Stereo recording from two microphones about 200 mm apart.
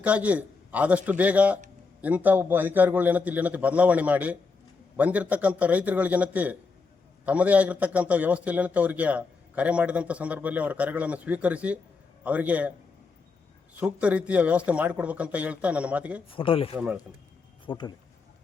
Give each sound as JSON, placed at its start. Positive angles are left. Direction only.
{"t": 0.0, "sound": "a man's voice", "side_deg": -5}
{"t": 13.7, "sound": "a man's voice", "side_deg": -5}
{"t": 16.3, "sound": "speech", "side_deg": 25}
{"t": 16.7, "sound": "a man's voice", "side_deg": -5}
{"t": 17.7, "sound": "speech", "side_deg": 25}